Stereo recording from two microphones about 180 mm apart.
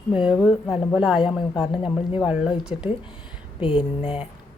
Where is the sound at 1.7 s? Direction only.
25° left (ahead or behind).